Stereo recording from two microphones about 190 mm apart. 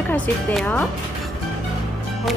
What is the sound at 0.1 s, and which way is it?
Speech, 5° left (ahead or behind).